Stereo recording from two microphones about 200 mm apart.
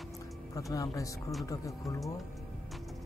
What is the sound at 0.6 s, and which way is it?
Speech, 15° left (ahead or behind).